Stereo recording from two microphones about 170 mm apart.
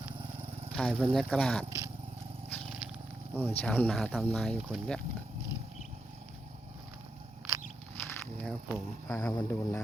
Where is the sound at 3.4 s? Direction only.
10° left (ahead or behind).